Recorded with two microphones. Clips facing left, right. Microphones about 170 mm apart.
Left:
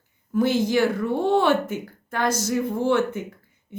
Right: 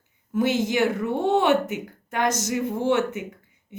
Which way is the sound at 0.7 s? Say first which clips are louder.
Left 2 dB; 20° right (ahead or behind).